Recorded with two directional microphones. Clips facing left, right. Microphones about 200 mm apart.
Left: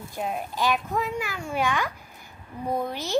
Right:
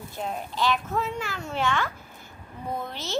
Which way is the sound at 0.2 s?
10° left (ahead or behind).